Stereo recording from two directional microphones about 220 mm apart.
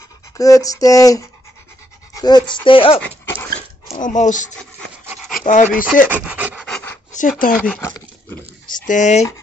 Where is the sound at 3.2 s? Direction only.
15° left (ahead or behind).